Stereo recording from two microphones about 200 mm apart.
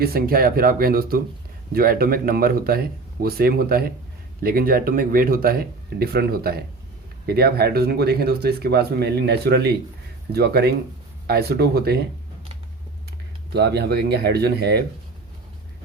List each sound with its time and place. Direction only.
0.0 s speech: 50° right (ahead or behind)
13.5 s speech: 55° right (ahead or behind)